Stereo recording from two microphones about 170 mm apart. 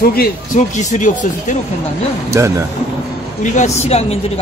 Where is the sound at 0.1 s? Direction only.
60° left (ahead or behind).